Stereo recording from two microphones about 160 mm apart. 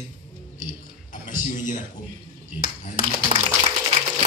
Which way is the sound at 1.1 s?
50° left (ahead or behind).